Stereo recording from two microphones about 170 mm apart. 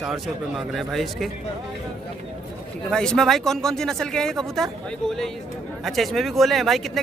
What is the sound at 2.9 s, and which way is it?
Speech, 5° left (ahead or behind).